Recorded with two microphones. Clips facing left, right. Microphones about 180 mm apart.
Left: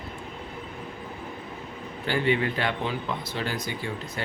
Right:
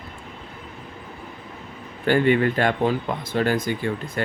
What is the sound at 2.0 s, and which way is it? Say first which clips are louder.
Speech: right 7 dB; 50° right (ahead or behind).